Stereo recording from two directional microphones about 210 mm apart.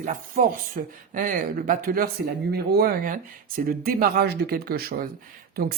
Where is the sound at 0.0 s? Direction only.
40° right (ahead or behind).